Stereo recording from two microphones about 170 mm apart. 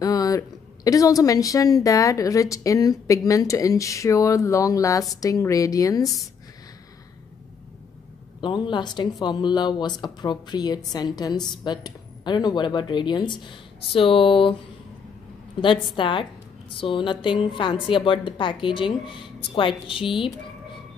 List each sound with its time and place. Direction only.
0.0 s a woman's voice: 20° left (ahead or behind)
8.4 s a woman's voice: 30° left (ahead or behind)
15.6 s a woman's voice: 30° left (ahead or behind)